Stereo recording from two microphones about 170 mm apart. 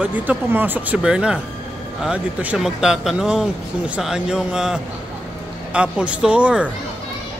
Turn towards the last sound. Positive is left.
turn(degrees=-5)  # may be behind; listen again after turning